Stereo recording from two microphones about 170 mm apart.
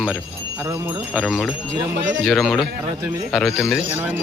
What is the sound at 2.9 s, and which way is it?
Speech, 20° right (ahead or behind).